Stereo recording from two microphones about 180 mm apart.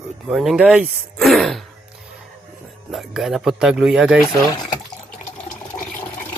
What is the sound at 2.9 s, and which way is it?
Speech, centre (ahead or behind).